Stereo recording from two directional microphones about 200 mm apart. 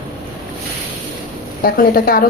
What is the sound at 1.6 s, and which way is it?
Speech, 45° left (ahead or behind).